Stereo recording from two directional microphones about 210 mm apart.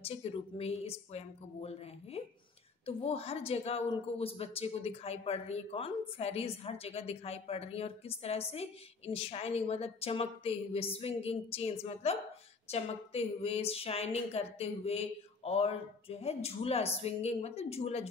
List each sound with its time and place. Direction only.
0.0 s speech: 30° left (ahead or behind)